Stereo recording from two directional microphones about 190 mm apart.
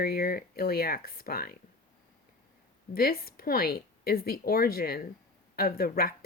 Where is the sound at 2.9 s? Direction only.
50° left (ahead or behind).